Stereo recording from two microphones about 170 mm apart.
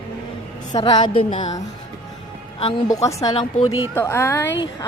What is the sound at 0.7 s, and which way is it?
Speech, 25° left (ahead or behind).